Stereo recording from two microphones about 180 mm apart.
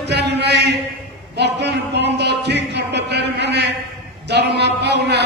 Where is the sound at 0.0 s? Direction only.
70° right (ahead or behind).